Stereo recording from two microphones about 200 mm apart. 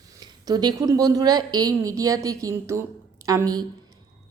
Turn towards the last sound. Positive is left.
turn(degrees=-20)  # may be behind; listen again after turning